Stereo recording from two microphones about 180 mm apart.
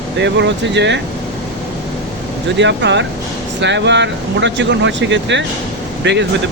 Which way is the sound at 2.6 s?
80° right.